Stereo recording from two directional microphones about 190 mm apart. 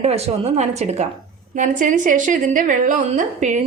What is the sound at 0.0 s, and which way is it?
A woman's voice, 35° right (ahead or behind).